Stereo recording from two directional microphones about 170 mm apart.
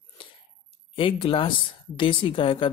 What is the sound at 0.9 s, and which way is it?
Speech, 30° left (ahead or behind).